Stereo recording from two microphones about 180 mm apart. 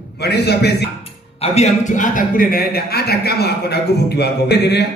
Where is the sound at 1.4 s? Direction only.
35° left (ahead or behind); by 4.9 s 65° left (ahead or behind).